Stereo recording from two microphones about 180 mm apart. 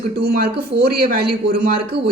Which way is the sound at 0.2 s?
60° right (ahead or behind).